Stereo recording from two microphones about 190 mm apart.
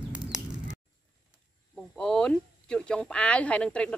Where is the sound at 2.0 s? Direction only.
5° left (ahead or behind).